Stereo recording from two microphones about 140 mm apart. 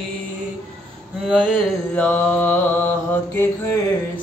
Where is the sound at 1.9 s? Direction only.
10° left (ahead or behind).